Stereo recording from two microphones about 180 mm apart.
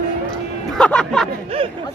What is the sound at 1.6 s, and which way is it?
Speech, 30° right (ahead or behind).